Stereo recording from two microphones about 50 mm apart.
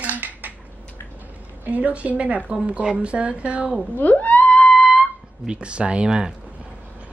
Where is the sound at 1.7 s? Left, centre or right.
Right.